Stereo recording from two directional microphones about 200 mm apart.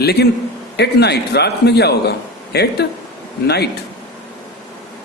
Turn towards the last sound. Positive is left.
turn(degrees=55)  # may be behind; listen again after turning